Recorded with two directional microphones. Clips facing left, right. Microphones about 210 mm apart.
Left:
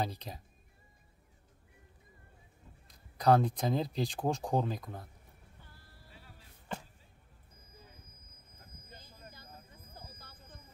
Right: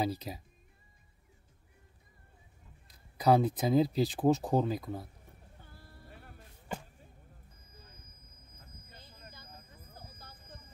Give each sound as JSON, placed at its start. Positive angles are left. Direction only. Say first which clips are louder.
{"t": 0.0, "sound": "speech", "louder": "right 4 dB", "side_deg": -5}
{"t": 3.2, "sound": "speech", "louder": "right 1 dB", "side_deg": -5}
{"t": 6.0, "sound": "music", "louder": "right 4 dB", "side_deg": -55}